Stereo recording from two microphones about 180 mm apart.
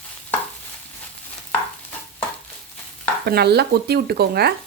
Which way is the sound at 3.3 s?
65° right (ahead or behind).